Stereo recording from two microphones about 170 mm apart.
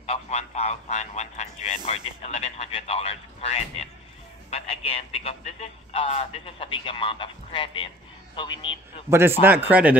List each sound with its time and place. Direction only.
0.0 s a man's voice: 40° left (ahead or behind)
9.4 s speech: 10° right (ahead or behind)